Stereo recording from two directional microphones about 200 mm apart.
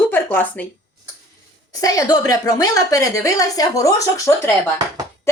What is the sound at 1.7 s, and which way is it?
A woman's voice, 15° left (ahead or behind).